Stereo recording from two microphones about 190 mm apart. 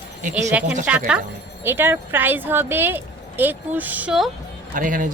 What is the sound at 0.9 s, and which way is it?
Speech, 5° right (ahead or behind).